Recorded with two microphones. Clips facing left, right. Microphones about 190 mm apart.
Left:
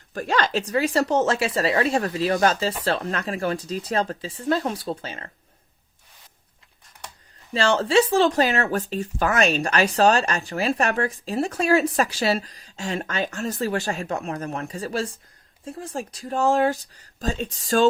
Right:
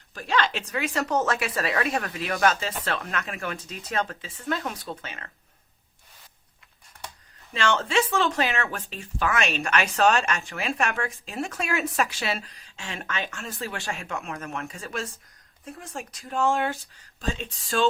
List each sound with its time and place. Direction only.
0.1 s speech: 45° left (ahead or behind)
7.5 s speech: 35° left (ahead or behind)